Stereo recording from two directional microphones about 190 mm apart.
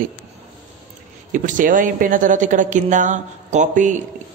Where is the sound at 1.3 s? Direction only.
45° right (ahead or behind).